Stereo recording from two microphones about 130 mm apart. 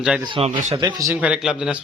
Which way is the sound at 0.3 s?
45° right (ahead or behind).